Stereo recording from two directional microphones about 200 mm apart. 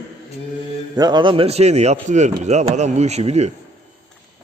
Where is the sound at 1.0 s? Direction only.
20° right (ahead or behind).